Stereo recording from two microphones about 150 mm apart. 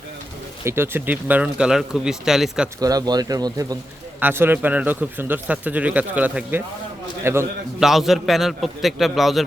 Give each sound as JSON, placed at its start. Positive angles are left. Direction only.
{"t": 0.6, "sound": "speech", "side_deg": -15}
{"t": 2.8, "sound": "speech", "side_deg": -25}
{"t": 4.2, "sound": "speech", "side_deg": -15}
{"t": 7.8, "sound": "a man's voice", "side_deg": 0}